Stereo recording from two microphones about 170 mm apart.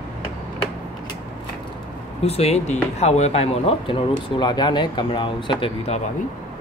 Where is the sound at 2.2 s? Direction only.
35° left (ahead or behind).